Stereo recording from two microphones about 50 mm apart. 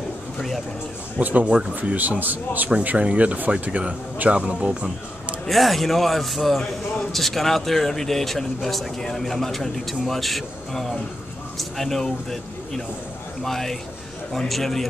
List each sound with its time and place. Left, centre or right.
1.2 s speech: right
5.5 s speech: centre